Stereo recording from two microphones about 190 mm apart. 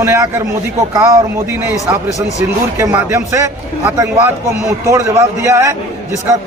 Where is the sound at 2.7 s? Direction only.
15° right (ahead or behind).